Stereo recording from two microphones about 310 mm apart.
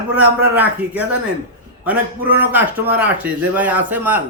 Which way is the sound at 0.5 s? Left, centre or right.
Centre.